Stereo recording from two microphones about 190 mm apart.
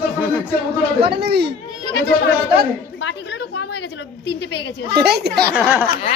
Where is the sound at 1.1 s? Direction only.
60° right (ahead or behind).